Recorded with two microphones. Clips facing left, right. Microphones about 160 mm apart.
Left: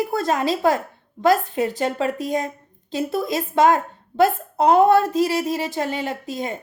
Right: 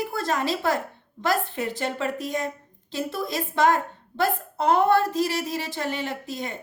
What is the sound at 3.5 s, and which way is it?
Speech, 45° left (ahead or behind).